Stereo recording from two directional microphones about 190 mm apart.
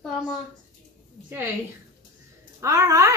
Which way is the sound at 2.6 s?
15° right (ahead or behind).